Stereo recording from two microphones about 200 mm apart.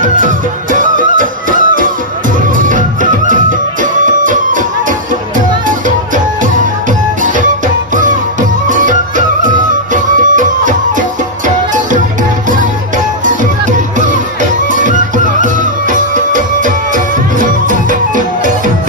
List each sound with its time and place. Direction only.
0.0 s music: 40° right (ahead or behind)